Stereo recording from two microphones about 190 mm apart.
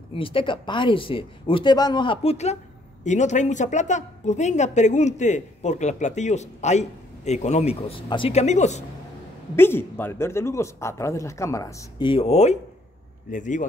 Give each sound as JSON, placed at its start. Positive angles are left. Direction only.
{"t": 0.1, "sound": "speech", "side_deg": 30}
{"t": 9.6, "sound": "speech", "side_deg": 10}